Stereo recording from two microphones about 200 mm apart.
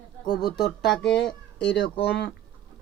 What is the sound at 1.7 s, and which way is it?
Speech, 60° left (ahead or behind).